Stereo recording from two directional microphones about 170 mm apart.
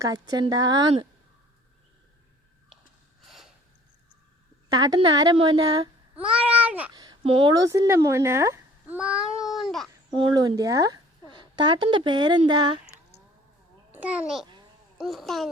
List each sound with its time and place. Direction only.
0.0 s speech: 25° right (ahead or behind)
3.2 s a sound: centre (ahead or behind)
4.7 s a woman's voice: 25° right (ahead or behind)
6.1 s babbling: 5° right (ahead or behind)
6.9 s a sound: 25° right (ahead or behind)
7.5 s a child's voice: 20° right (ahead or behind); by 9.9 s centre (ahead or behind)
10.2 s a woman's voice: 25° right (ahead or behind)
13.9 s a child's voice: 10° right (ahead or behind)